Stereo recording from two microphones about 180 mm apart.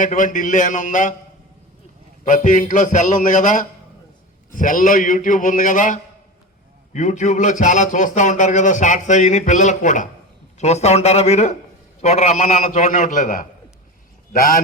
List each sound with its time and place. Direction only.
0.0 s speech: 45° left (ahead or behind)
2.2 s a man's voice: 45° left (ahead or behind)